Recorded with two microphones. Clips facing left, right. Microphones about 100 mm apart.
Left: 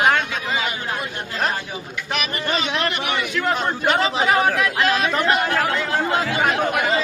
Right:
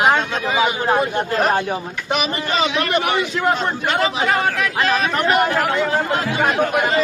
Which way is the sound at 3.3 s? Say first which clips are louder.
Right 1 dB; 15° right (ahead or behind).